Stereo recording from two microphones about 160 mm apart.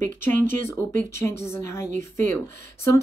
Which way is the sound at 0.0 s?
15° left (ahead or behind).